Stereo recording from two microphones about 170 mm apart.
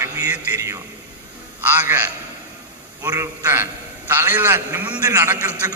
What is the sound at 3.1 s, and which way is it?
A man's voice, 15° right (ahead or behind).